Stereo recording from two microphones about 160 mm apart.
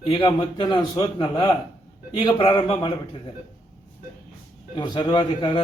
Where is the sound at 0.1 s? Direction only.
30° left (ahead or behind).